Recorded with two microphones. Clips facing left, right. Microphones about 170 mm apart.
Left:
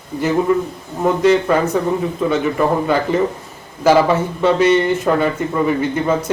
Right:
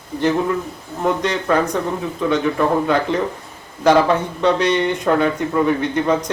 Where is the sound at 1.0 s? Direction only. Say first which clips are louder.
Left 6 dB; 5° left (ahead or behind).